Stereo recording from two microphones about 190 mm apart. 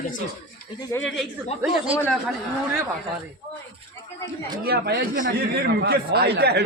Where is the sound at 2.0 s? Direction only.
Centre (ahead or behind).